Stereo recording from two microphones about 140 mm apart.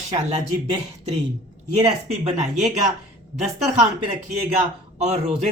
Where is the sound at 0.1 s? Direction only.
50° right (ahead or behind).